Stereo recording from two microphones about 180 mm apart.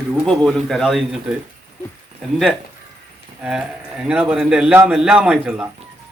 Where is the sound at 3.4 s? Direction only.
5° right (ahead or behind).